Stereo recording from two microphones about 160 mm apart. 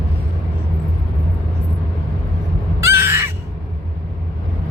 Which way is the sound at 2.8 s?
15° right (ahead or behind).